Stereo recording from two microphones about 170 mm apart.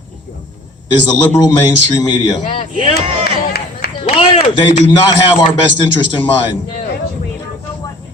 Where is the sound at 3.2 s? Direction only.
65° left (ahead or behind).